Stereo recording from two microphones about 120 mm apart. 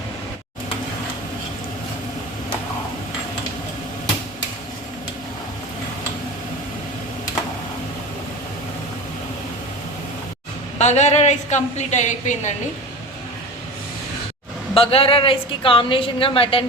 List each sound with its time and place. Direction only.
10.8 s a woman's voice: 70° left (ahead or behind)
14.7 s a woman's voice: 50° left (ahead or behind)